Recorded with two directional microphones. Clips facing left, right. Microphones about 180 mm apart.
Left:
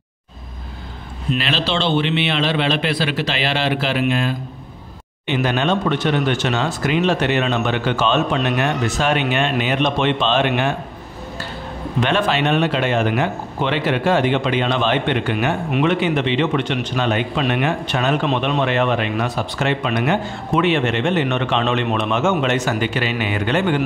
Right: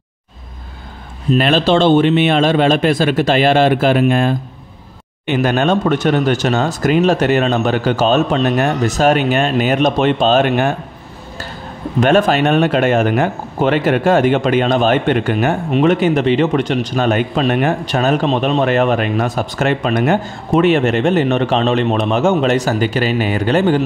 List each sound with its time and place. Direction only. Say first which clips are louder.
1.3 s speech: right 9 dB; 50° right (ahead or behind)
12.0 s speech: right 6 dB; 45° right (ahead or behind)